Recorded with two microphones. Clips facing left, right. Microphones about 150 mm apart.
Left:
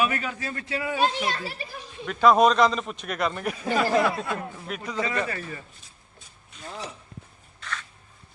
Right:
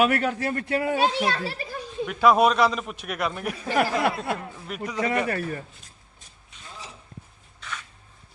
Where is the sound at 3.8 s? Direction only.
65° right (ahead or behind).